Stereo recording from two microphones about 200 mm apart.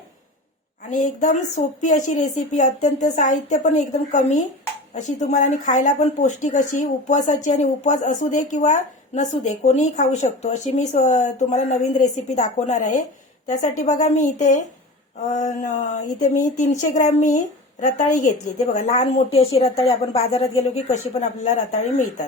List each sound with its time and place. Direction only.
0.9 s a woman's voice: 40° left (ahead or behind)
19.7 s a woman's voice: 20° left (ahead or behind); by 22.0 s 35° left (ahead or behind)